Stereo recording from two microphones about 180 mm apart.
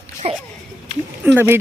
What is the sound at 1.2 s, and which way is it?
Speech, 10° right (ahead or behind).